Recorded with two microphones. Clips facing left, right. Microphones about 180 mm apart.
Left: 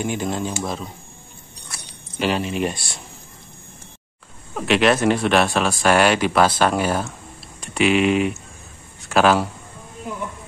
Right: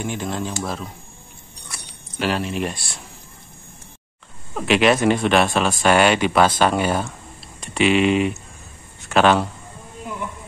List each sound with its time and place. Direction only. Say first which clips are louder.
0.0 s speech: left 2 dB; 5° left (ahead or behind)
2.1 s speech: left 1 dB; centre (ahead or behind)
4.6 s speech: right 1 dB; centre (ahead or behind)